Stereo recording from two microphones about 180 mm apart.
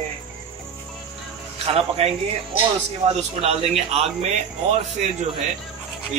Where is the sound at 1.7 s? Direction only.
35° right (ahead or behind).